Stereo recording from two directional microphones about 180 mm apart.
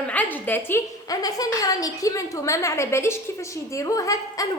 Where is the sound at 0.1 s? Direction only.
10° left (ahead or behind).